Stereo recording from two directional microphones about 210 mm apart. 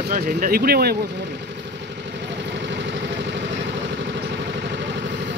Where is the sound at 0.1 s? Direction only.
45° right (ahead or behind).